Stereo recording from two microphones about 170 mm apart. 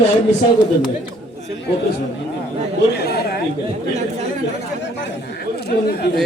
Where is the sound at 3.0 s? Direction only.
70° left (ahead or behind).